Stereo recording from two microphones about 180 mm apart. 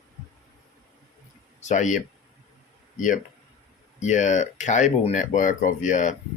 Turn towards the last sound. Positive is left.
turn(degrees=45)  # may be behind; listen again after turning